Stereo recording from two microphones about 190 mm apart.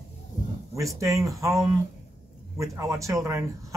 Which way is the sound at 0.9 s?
15° right (ahead or behind).